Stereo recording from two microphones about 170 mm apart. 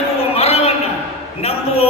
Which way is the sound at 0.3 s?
35° left (ahead or behind).